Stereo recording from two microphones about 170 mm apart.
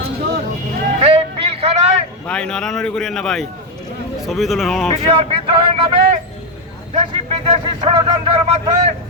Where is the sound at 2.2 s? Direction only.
5° left (ahead or behind).